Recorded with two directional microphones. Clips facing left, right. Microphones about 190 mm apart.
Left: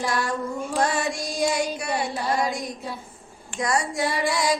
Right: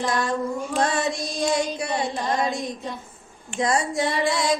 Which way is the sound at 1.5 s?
20° right (ahead or behind).